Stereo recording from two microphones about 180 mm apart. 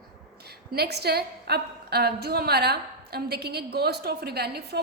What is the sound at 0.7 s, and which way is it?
A woman's voice, 65° right (ahead or behind).